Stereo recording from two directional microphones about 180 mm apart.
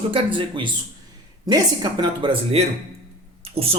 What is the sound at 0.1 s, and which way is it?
Speech, 30° right (ahead or behind).